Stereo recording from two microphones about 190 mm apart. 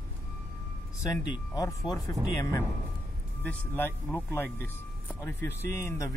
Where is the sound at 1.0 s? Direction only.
20° left (ahead or behind).